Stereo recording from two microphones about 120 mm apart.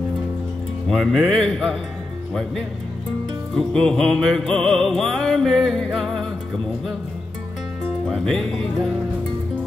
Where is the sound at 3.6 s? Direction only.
5° left (ahead or behind).